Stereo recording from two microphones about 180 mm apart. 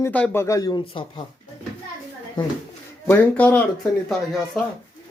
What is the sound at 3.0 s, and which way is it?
Speech, 10° left (ahead or behind).